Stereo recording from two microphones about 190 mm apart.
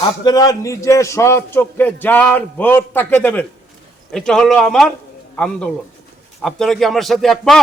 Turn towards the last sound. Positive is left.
turn(degrees=0)  # may be behind; listen again after turning